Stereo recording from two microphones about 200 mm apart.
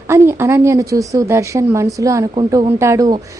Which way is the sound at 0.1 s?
10° right (ahead or behind).